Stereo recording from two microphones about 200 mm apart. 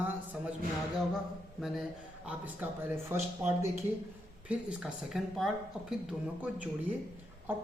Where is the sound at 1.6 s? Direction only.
Centre (ahead or behind).